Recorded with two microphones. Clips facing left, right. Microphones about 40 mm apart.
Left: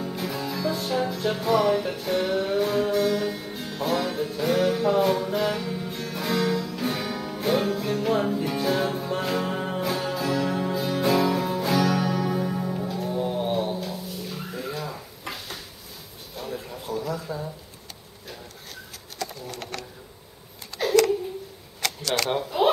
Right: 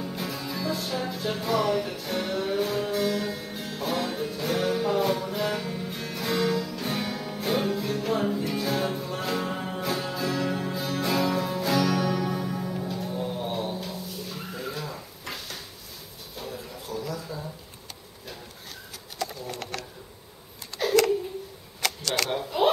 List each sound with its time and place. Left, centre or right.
0.4 s music: centre
13.1 s music: centre
13.8 s drawer open or close: centre
16.9 s a sound: left
20.7 s a sound: centre
21.8 s camera: centre
22.5 s chuckle: centre